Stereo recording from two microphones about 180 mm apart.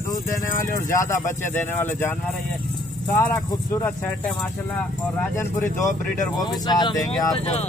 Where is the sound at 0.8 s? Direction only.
15° left (ahead or behind).